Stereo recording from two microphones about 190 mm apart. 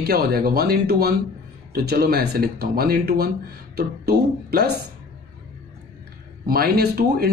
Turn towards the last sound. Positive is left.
turn(degrees=-55)  # may be behind; listen again after turning